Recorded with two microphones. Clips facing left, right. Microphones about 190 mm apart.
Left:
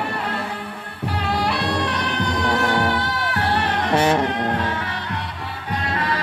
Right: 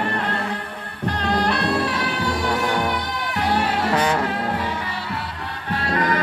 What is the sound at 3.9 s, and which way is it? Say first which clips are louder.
Music: left 5 dB; 25° left (ahead or behind).